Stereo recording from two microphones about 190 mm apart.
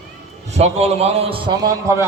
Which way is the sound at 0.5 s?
35° right (ahead or behind).